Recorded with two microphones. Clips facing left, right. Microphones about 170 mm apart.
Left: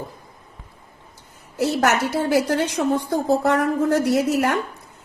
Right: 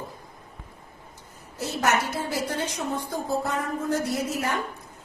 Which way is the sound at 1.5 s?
75° left (ahead or behind).